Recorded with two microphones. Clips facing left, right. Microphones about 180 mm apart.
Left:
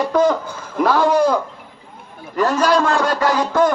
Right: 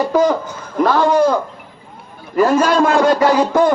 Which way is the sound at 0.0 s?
10° right (ahead or behind).